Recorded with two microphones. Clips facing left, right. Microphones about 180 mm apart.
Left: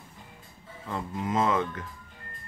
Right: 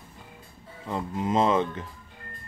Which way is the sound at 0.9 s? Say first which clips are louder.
Right 3 dB; 25° right (ahead or behind).